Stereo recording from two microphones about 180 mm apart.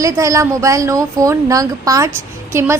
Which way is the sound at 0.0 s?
20° right (ahead or behind).